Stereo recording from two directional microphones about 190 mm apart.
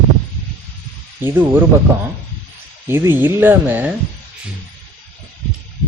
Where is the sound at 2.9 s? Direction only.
15° right (ahead or behind).